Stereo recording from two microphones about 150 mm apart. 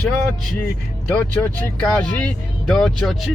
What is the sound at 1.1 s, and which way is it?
Speech, 10° left (ahead or behind).